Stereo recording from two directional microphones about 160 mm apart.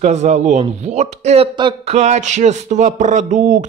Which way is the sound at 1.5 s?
30° right (ahead or behind).